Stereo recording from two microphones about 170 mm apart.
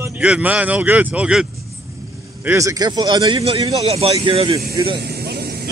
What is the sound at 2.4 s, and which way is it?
A man's voice, 20° right (ahead or behind).